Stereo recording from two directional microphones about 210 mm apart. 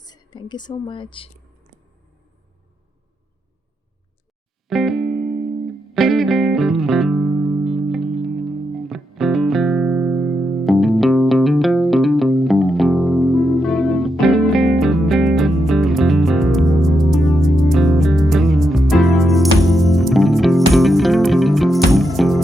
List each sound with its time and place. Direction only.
0.0 s a woman's voice: 20° left (ahead or behind)
4.7 s music: centre (ahead or behind)